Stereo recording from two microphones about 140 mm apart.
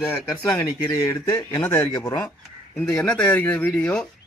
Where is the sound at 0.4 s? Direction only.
25° left (ahead or behind).